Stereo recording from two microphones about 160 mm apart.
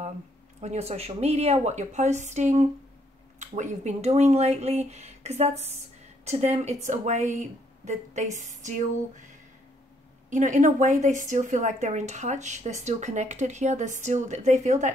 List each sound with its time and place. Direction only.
0.6 s a woman's voice: 45° right (ahead or behind)
10.3 s a woman's voice: 50° right (ahead or behind)